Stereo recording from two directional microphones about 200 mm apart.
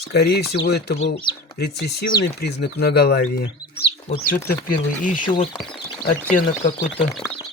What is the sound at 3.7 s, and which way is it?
Chicken, 50° left (ahead or behind).